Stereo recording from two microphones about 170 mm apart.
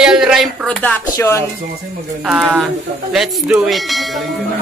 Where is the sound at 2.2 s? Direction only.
5° right (ahead or behind).